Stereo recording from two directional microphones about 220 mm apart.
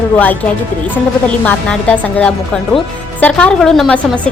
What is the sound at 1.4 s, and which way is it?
A woman's voice, 5° left (ahead or behind).